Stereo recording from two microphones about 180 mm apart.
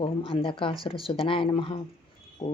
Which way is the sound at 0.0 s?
30° left (ahead or behind).